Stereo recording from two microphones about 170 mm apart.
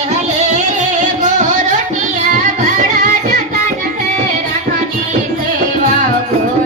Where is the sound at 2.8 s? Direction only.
45° right (ahead or behind).